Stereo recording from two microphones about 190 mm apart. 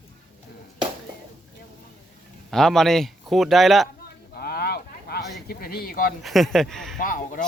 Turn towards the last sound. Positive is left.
turn(degrees=45)  # may be behind; listen again after turning